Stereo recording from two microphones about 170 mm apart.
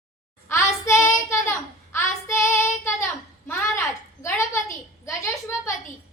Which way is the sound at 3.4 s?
15° left (ahead or behind).